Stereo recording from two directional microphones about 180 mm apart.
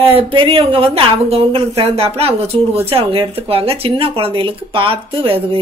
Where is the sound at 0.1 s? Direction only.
30° right (ahead or behind).